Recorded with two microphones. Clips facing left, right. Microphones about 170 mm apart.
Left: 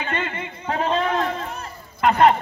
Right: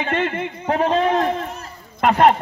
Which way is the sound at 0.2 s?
60° right (ahead or behind).